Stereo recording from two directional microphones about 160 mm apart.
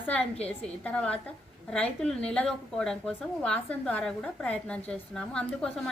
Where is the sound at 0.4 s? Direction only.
10° left (ahead or behind).